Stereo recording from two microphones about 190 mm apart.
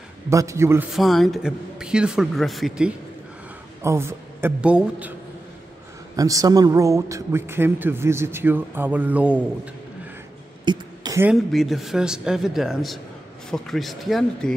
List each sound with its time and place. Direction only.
0.3 s a man's voice: 15° right (ahead or behind)
0.9 s speech: centre (ahead or behind)
3.8 s a man's voice: 15° right (ahead or behind)
6.1 s a man's voice: 20° right (ahead or behind)
10.6 s a sound: 25° right (ahead or behind)
11.1 s speech: 5° right (ahead or behind)